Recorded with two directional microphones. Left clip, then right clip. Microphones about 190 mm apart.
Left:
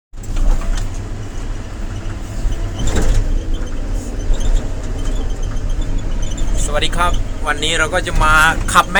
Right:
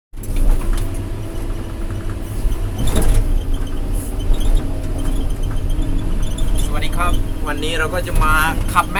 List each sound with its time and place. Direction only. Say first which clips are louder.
6.7 s speech: left 5 dB; 15° left (ahead or behind)